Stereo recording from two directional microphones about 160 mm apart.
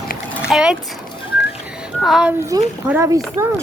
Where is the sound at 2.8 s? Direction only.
15° right (ahead or behind).